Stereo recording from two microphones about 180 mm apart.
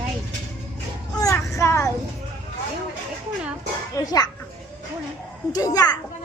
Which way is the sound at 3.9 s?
20° left (ahead or behind).